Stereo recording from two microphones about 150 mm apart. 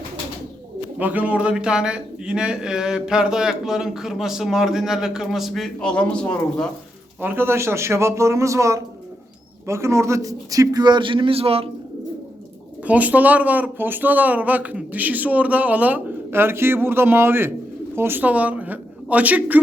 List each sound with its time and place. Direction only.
0.9 s a man's voice: 10° right (ahead or behind); by 6.7 s 10° left (ahead or behind)
7.2 s a man's voice: 15° right (ahead or behind); by 11.7 s 40° right (ahead or behind)
12.8 s a woman's voice: 10° right (ahead or behind)